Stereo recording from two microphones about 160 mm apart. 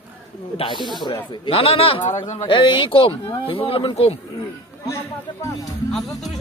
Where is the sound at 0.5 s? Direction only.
30° left (ahead or behind).